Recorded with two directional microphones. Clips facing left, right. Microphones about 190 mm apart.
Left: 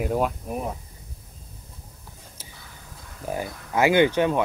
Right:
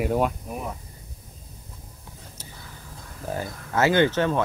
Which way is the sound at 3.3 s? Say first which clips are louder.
Left 1 dB; 15° left (ahead or behind).